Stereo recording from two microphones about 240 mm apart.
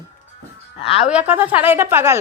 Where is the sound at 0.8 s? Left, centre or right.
Left.